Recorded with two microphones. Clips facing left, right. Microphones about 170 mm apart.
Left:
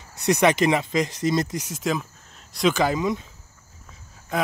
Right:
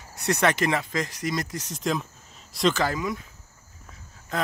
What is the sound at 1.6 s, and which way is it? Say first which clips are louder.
Speech: left 2 dB; 5° left (ahead or behind).